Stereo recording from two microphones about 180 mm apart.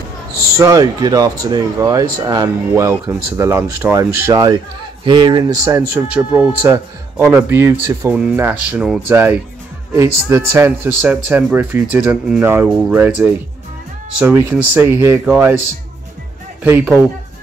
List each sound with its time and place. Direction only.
0.6 s speech: 20° right (ahead or behind)
16.6 s speech: 10° right (ahead or behind)